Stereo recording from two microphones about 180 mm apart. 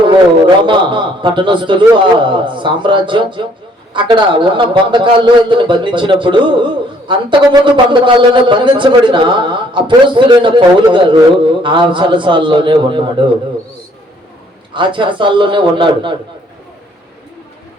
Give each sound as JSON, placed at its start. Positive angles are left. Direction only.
{"t": 0.4, "sound": "a man's voice", "side_deg": -25}
{"t": 14.7, "sound": "a man's voice", "side_deg": -25}